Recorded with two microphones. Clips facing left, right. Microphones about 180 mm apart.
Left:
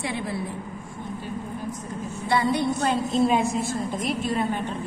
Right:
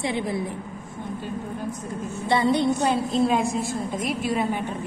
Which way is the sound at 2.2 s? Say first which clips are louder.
Right 2 dB; 25° right (ahead or behind).